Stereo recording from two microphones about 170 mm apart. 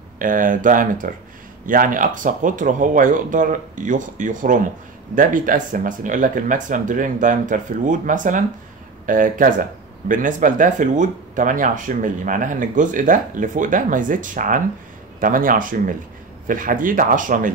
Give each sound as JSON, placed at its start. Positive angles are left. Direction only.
{"t": 0.2, "sound": "speech", "side_deg": -50}